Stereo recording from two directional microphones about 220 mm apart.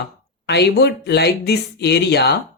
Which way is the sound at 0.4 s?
50° left (ahead or behind).